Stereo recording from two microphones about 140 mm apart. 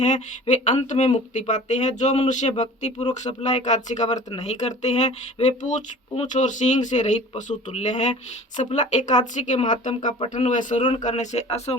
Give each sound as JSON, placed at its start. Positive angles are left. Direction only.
{"t": 0.0, "sound": "speech", "side_deg": 60}
{"t": 10.2, "sound": "speech", "side_deg": 55}